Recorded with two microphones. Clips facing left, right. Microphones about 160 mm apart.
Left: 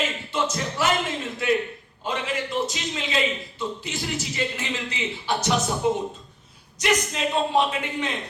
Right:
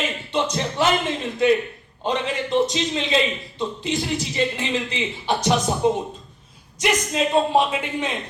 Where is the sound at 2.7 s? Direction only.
30° right (ahead or behind).